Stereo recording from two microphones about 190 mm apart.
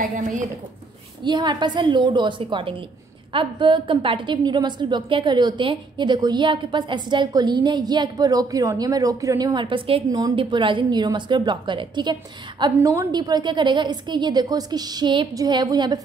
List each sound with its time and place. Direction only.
0.0 s a woman's voice: 40° right (ahead or behind)
1.2 s a woman's voice: 25° right (ahead or behind)